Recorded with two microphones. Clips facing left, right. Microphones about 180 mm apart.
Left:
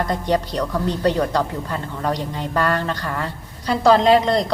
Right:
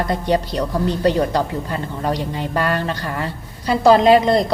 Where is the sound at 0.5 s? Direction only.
25° right (ahead or behind).